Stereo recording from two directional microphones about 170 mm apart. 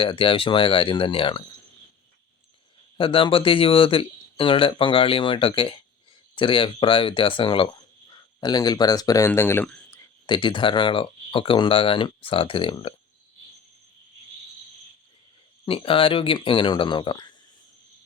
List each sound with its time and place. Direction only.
0.0 s speech: 30° left (ahead or behind)
3.0 s speech: 30° left (ahead or behind); by 10.1 s 15° left (ahead or behind)
10.2 s speech: 25° left (ahead or behind)
15.6 s speech: 30° left (ahead or behind)